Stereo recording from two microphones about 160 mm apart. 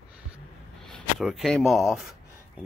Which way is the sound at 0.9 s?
Centre (ahead or behind).